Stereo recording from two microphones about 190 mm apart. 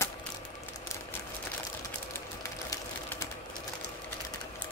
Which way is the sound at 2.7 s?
15° left (ahead or behind).